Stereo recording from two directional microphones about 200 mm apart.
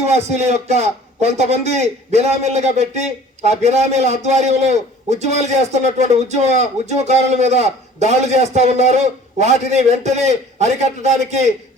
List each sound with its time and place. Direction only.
0.0 s a man's voice: 35° right (ahead or behind)